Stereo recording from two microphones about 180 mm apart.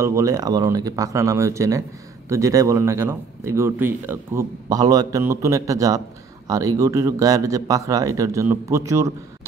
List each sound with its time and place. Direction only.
0.0 s speech: 15° right (ahead or behind)